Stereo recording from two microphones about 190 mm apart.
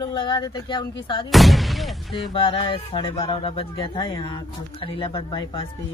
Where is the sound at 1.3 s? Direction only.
Centre (ahead or behind).